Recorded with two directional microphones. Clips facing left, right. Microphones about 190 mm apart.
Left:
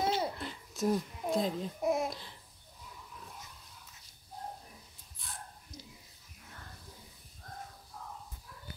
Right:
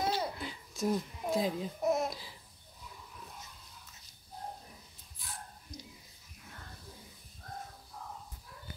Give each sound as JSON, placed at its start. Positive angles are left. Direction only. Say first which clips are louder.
{"t": 0.0, "sound": "babbling", "louder": "left 2 dB", "side_deg": 25}
{"t": 0.4, "sound": "babbling", "louder": "left 1 dB", "side_deg": 0}
{"t": 5.2, "sound": "a sound", "louder": "even", "side_deg": 0}